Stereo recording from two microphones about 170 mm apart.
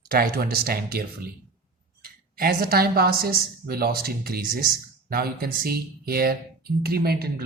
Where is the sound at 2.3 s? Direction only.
60° right (ahead or behind).